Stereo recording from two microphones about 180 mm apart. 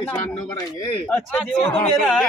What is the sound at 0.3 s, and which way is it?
Speech, 25° left (ahead or behind).